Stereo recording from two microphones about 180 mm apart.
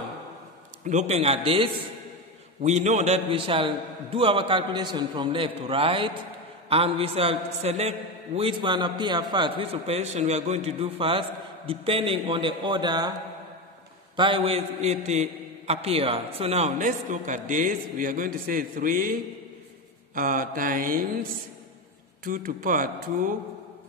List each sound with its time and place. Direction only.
0.8 s a man's voice: 40° right (ahead or behind); by 13.1 s 25° right (ahead or behind)
14.1 s a man's voice: 30° right (ahead or behind); by 19.1 s 50° right (ahead or behind)
20.2 s mantra: 50° right (ahead or behind)
22.2 s mantra: 50° right (ahead or behind)